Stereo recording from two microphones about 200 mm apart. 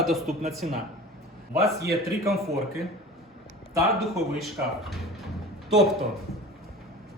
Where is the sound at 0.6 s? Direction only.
40° right (ahead or behind).